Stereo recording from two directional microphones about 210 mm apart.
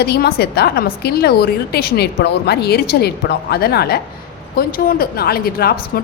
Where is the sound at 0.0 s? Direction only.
50° left (ahead or behind).